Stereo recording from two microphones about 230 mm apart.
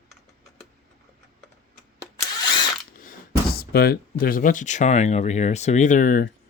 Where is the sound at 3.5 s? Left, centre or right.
Left.